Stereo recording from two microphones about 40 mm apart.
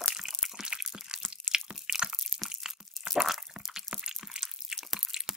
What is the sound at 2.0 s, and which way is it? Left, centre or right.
Crunch, right.